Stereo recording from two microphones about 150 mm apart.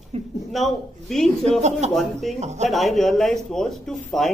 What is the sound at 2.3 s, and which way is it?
Speech, 50° right (ahead or behind).